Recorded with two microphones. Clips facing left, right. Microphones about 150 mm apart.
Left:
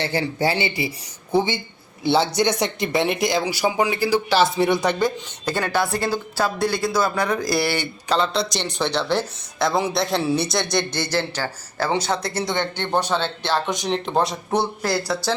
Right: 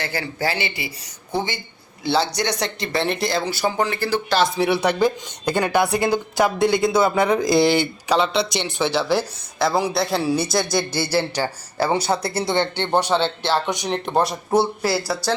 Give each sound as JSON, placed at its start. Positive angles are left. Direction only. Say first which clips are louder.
{"t": 0.0, "sound": "a man's voice", "louder": "left 3 dB", "side_deg": 20}
{"t": 2.0, "sound": "speech", "louder": "left 2 dB", "side_deg": 20}
{"t": 4.8, "sound": "speech", "louder": "right 2 dB", "side_deg": -10}
{"t": 13.5, "sound": "speech", "louder": "left 2 dB", "side_deg": 0}